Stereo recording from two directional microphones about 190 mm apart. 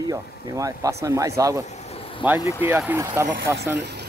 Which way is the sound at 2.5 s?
10° right (ahead or behind).